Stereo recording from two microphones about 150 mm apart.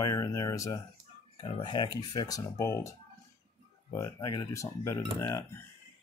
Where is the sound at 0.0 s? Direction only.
20° left (ahead or behind).